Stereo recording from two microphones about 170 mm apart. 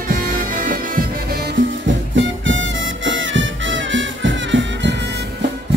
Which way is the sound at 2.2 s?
90° right.